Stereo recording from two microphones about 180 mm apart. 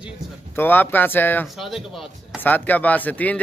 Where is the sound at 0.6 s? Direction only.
10° left (ahead or behind).